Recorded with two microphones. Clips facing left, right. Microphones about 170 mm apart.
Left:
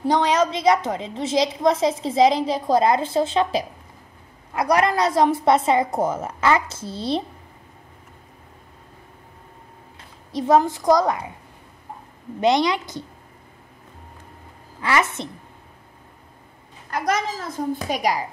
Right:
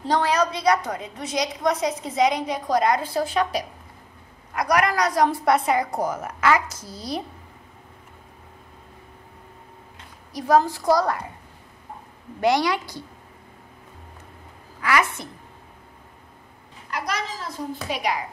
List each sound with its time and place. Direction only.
0.0 s a woman's voice: 15° left (ahead or behind)
10.3 s a woman's voice: 25° left (ahead or behind)
12.4 s a woman's voice: 20° left (ahead or behind)
14.8 s a woman's voice: 25° left (ahead or behind)
16.9 s a woman's voice: 50° left (ahead or behind)